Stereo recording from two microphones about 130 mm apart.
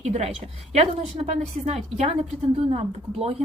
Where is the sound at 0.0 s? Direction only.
55° right (ahead or behind).